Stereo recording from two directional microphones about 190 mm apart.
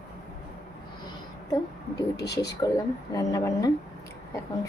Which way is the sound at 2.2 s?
60° left (ahead or behind).